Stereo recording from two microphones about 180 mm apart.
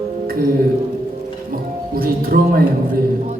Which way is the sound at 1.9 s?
55° right (ahead or behind).